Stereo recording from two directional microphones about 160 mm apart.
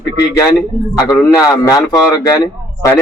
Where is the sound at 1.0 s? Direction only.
25° left (ahead or behind).